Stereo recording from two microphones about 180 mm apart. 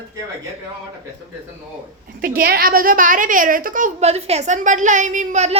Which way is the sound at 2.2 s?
55° right (ahead or behind).